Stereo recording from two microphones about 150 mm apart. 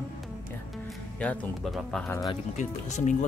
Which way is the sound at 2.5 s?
50° left (ahead or behind).